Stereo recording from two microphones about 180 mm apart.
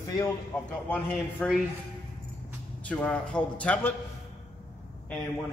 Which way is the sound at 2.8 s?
10° left (ahead or behind).